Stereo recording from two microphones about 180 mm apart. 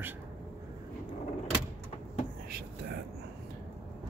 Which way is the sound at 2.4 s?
55° right (ahead or behind).